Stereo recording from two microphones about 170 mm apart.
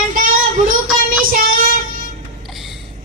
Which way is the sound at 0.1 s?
55° right (ahead or behind).